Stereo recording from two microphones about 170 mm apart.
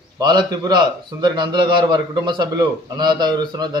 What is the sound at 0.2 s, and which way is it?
A man's voice, 25° right (ahead or behind).